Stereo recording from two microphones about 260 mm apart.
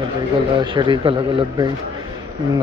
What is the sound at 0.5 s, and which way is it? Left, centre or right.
Speech, centre.